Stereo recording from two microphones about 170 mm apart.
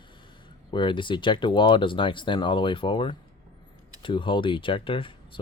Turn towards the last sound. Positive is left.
turn(degrees=30)  # may be behind; listen again after turning